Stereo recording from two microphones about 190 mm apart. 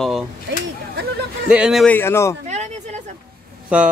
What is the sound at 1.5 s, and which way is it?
Speech, 5° right (ahead or behind).